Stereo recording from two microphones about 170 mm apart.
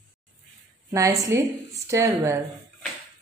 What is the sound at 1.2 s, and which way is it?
A woman's voice, 15° right (ahead or behind).